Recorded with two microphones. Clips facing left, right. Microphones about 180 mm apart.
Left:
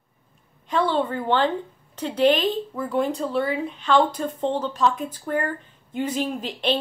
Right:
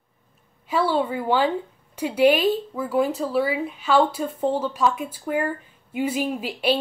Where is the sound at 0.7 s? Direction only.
10° right (ahead or behind).